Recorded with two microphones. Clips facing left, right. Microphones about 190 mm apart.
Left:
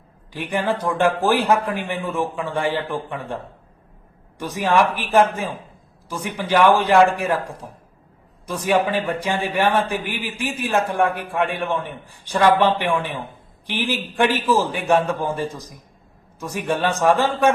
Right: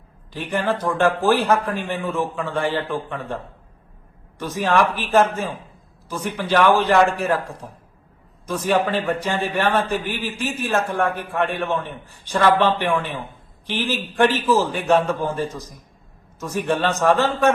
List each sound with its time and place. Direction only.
0.3 s a man's voice: 15° left (ahead or behind)
4.4 s a man's voice: 15° left (ahead or behind)